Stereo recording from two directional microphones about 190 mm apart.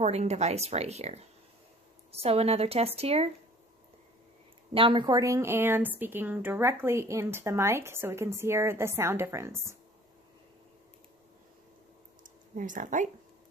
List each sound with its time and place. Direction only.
0.0 s speech: 35° right (ahead or behind)
2.2 s speech: 30° right (ahead or behind)
4.7 s a woman's voice: 25° right (ahead or behind)
12.2 s a sound: 45° right (ahead or behind)